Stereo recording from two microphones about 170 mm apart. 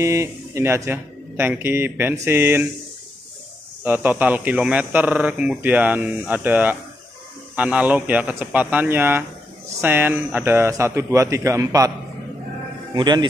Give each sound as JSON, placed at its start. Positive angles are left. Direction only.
{"t": 0.0, "sound": "speech", "side_deg": -15}
{"t": 3.8, "sound": "speech", "side_deg": -10}
{"t": 12.9, "sound": "speech", "side_deg": -25}